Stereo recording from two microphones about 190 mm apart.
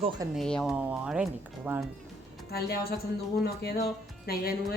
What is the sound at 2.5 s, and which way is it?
A woman's voice, 55° left (ahead or behind).